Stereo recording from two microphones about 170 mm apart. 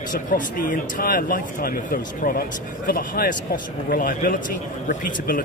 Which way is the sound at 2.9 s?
60° left (ahead or behind).